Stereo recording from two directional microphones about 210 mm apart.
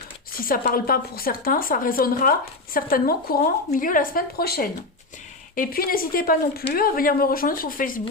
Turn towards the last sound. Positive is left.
turn(degrees=40)  # may be behind; listen again after turning